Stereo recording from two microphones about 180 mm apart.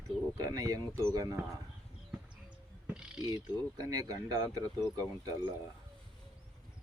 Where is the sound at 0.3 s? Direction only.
20° right (ahead or behind).